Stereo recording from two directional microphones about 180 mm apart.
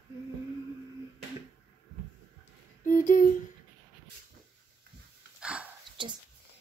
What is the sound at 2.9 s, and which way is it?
Speech, 45° left (ahead or behind).